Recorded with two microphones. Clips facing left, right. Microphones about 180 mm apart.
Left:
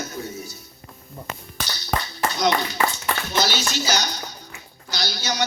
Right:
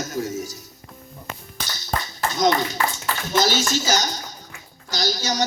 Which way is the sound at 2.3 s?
45° right (ahead or behind).